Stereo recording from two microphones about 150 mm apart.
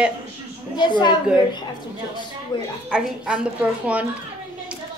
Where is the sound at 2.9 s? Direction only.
5° right (ahead or behind).